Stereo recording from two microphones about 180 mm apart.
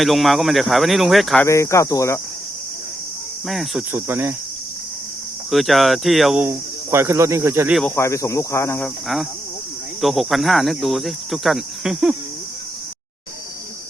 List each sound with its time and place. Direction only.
0.0 s cricket: centre (ahead or behind)
1.5 s speech: 15° left (ahead or behind)
3.4 s cricket: centre (ahead or behind)
3.9 s speech: 10° right (ahead or behind)
5.5 s speech: centre (ahead or behind)
7.9 s speech: 15° left (ahead or behind)
10.0 s cricket: centre (ahead or behind)